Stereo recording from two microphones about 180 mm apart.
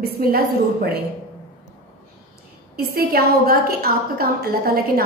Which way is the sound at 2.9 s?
55° right (ahead or behind).